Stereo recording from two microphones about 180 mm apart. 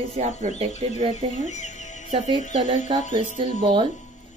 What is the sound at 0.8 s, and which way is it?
Speech, 40° right (ahead or behind).